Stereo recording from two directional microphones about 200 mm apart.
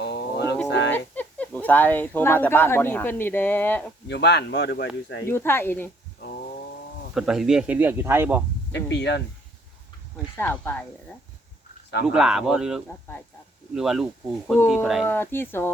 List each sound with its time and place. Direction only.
0.0 s a sound: 55° left (ahead or behind)
0.9 s speech: 10° left (ahead or behind)
4.1 s speech: 55° left (ahead or behind)
5.2 s speech: 10° left (ahead or behind)
7.1 s speech: centre (ahead or behind)
8.7 s speech: 60° left (ahead or behind)
10.3 s speech: 10° left (ahead or behind)
12.0 s speech: 5° right (ahead or behind)
15.0 s speech: 10° left (ahead or behind)